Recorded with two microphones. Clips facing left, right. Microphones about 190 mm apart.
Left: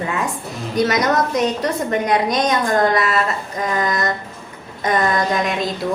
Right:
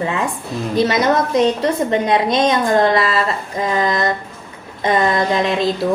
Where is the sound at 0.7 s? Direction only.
25° right (ahead or behind).